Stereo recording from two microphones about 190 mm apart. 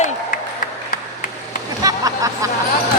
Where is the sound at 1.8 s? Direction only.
20° right (ahead or behind).